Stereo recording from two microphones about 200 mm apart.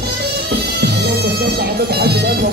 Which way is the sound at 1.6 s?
55° right (ahead or behind).